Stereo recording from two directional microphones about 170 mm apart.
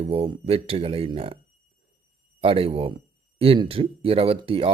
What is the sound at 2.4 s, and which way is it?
Speech, 35° right (ahead or behind).